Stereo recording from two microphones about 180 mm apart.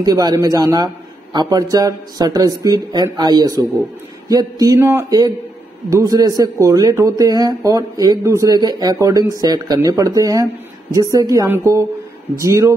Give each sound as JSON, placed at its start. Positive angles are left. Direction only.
{"t": 0.0, "sound": "a woman's voice", "side_deg": -20}